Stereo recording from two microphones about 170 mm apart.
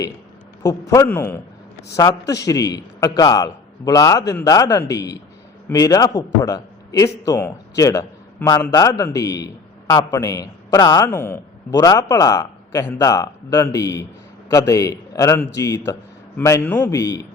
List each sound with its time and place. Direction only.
0.6 s a man's voice: 20° left (ahead or behind)